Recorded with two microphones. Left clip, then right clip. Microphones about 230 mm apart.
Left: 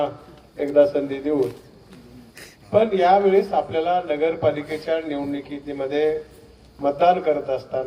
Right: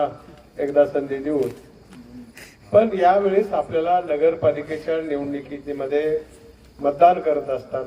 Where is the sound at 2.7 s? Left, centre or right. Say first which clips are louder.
Right 1 dB; left.